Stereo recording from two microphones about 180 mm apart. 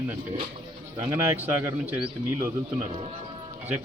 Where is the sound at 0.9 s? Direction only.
15° right (ahead or behind).